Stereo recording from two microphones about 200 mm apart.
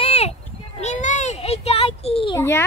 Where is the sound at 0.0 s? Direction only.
30° left (ahead or behind).